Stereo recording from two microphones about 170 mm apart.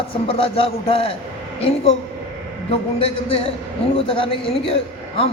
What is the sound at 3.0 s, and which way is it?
Speech, 35° left (ahead or behind).